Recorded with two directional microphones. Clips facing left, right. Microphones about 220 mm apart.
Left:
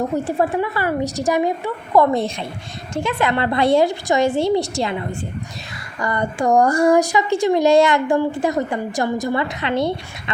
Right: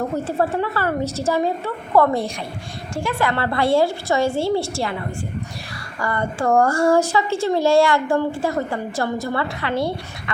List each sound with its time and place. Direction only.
0.3 s a woman's voice: 15° left (ahead or behind)